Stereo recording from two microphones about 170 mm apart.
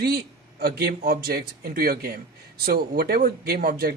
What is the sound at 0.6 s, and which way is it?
Speech, 65° right (ahead or behind).